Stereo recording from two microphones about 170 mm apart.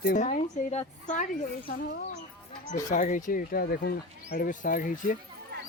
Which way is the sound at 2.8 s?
50° left (ahead or behind).